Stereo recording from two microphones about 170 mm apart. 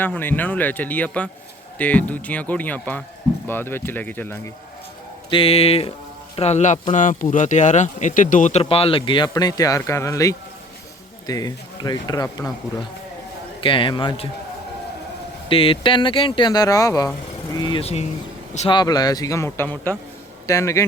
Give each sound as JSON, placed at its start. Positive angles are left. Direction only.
{"t": 0.0, "sound": "speech", "side_deg": 10}
{"t": 5.3, "sound": "a man's voice", "side_deg": 35}
{"t": 13.6, "sound": "speech", "side_deg": 30}
{"t": 15.4, "sound": "speech", "side_deg": 30}
{"t": 18.7, "sound": "speech", "side_deg": 25}